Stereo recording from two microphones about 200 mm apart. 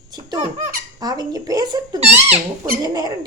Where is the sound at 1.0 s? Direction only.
20° right (ahead or behind).